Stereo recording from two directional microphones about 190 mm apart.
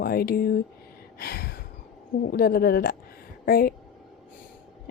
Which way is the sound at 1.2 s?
55° left (ahead or behind).